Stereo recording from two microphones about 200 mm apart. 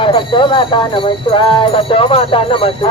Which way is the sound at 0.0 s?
25° left (ahead or behind).